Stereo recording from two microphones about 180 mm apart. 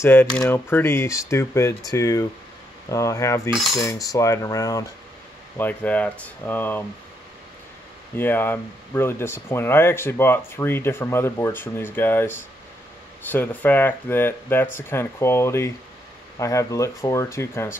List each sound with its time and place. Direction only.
0.0 s speech: 10° left (ahead or behind)
3.7 s cutlery: 20° left (ahead or behind)
5.6 s speech: 10° left (ahead or behind)
8.2 s speech: 10° left (ahead or behind)